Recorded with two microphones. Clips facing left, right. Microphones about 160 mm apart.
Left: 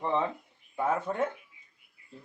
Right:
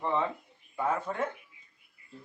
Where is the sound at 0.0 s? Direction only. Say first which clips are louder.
Left 1 dB; 15° left (ahead or behind).